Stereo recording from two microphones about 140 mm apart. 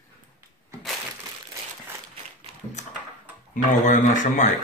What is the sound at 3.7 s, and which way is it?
Speech, 60° left (ahead or behind).